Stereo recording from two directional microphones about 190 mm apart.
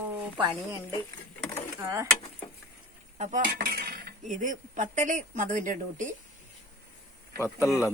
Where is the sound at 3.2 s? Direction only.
40° right (ahead or behind).